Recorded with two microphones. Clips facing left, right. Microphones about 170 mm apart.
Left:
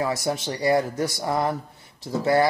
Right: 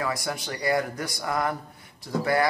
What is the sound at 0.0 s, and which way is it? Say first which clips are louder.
Speech: left 5 dB; 25° left (ahead or behind).